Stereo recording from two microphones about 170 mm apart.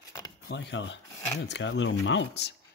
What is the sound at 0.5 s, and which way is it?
Speech, 90° left.